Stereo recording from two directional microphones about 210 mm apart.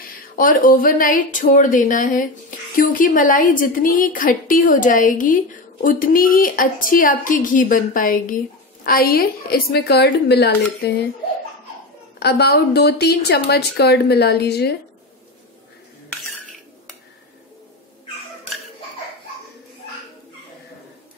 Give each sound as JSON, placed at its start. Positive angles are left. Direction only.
{"t": 0.4, "sound": "a woman's voice", "side_deg": 40}
{"t": 12.2, "sound": "a woman's voice", "side_deg": 50}